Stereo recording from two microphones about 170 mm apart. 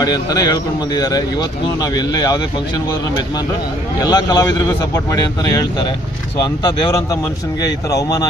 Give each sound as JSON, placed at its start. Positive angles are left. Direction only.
{"t": 0.0, "sound": "a man's voice", "side_deg": 20}
{"t": 4.0, "sound": "a man's voice", "side_deg": 25}
{"t": 6.4, "sound": "a man's voice", "side_deg": 20}